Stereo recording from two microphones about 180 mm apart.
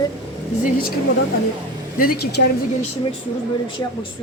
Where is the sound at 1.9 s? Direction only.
55° left (ahead or behind).